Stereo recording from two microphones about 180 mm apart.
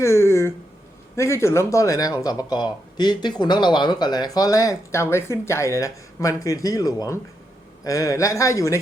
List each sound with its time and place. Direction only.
0.0 s speech: 15° left (ahead or behind)